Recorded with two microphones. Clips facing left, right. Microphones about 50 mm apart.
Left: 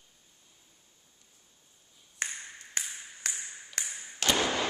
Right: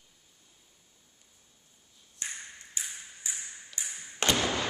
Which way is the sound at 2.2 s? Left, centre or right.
Left.